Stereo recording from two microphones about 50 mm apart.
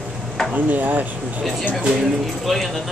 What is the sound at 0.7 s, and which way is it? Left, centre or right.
Speech, right.